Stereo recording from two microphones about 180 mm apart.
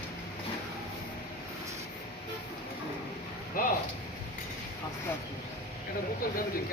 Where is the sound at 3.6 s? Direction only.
50° left (ahead or behind).